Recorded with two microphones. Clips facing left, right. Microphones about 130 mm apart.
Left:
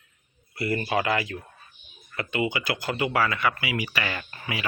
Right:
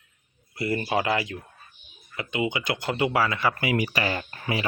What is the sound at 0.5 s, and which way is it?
Speech, 25° right (ahead or behind).